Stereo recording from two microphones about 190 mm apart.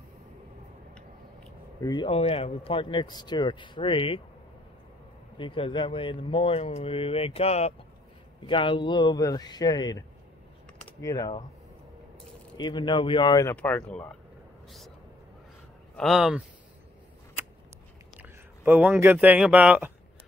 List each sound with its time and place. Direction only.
1.8 s speech: 25° left (ahead or behind)
5.4 s speech: 25° left (ahead or behind)
12.5 s speech: 25° left (ahead or behind)
13.6 s speech: 5° left (ahead or behind)
16.0 s speech: centre (ahead or behind)
18.2 s speech: 10° right (ahead or behind)